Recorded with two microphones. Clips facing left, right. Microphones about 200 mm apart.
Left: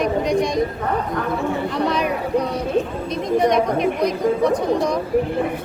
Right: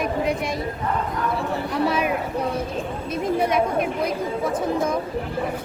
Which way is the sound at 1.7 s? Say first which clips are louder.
Right 2 dB; 5° right (ahead or behind).